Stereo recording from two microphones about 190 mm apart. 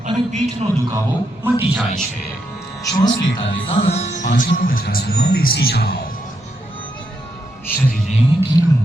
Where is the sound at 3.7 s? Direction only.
30° left (ahead or behind); by 6.0 s 55° left (ahead or behind).